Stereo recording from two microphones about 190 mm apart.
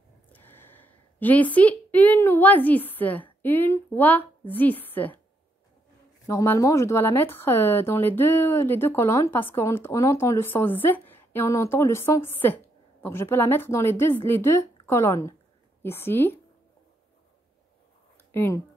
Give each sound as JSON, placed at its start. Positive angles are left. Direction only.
{"t": 0.3, "sound": "a woman's voice", "side_deg": 10}
{"t": 6.2, "sound": "speech", "side_deg": 15}
{"t": 18.1, "sound": "a sound", "side_deg": 10}